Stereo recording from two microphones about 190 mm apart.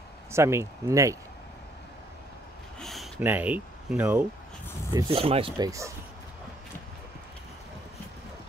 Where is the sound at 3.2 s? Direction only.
10° right (ahead or behind).